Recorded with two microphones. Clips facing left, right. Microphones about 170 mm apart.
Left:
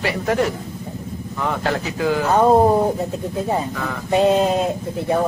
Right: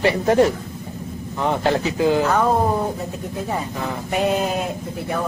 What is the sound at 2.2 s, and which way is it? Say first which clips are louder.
Speech: left 3 dB; 25° left (ahead or behind).